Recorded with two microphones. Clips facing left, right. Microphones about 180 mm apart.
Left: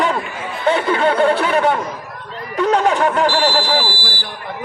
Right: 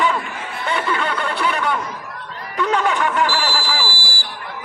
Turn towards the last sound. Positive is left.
turn(degrees=-10)  # may be behind; listen again after turning